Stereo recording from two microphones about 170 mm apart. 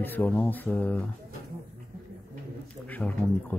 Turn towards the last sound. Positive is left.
turn(degrees=10)  # may be behind; listen again after turning